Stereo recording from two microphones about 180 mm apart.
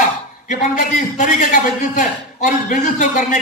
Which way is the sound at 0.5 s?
45° left (ahead or behind).